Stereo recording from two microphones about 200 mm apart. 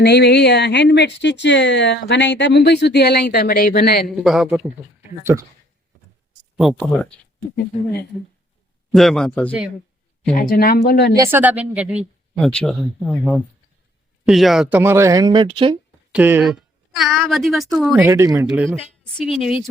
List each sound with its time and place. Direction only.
0.0 s speech: 55° left (ahead or behind)
4.0 s speech: centre (ahead or behind)
5.2 s speech: 15° right (ahead or behind)
6.6 s speech: centre (ahead or behind)
8.9 s speech: centre (ahead or behind)
10.3 s speech: 45° left (ahead or behind)
11.2 s speech: 10° right (ahead or behind); by 15.8 s 25° right (ahead or behind)
16.1 s a woman's voice: 10° right (ahead or behind)